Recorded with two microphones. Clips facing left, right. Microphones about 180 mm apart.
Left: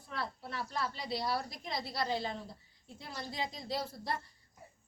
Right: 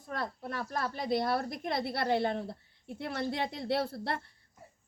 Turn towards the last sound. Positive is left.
turn(degrees=-65)  # may be behind; listen again after turning